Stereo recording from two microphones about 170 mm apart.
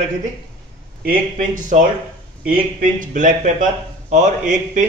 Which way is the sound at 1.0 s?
50° right (ahead or behind).